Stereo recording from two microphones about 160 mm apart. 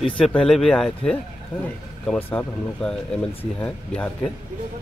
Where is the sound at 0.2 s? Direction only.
5° left (ahead or behind).